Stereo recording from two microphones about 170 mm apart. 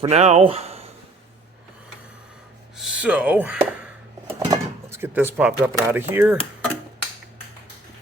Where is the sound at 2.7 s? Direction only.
5° right (ahead or behind).